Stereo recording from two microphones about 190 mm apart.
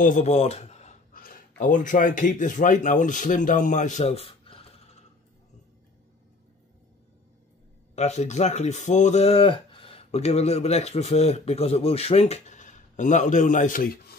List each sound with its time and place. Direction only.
0.0 s speech: 40° left (ahead or behind)
7.9 s speech: 35° left (ahead or behind)